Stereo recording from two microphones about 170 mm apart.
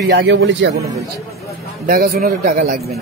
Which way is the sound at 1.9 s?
60° right (ahead or behind).